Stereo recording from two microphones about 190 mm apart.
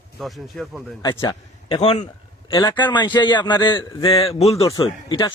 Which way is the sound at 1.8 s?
35° left (ahead or behind).